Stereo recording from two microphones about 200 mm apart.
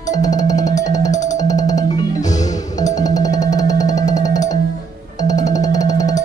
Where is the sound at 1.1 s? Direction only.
35° left (ahead or behind).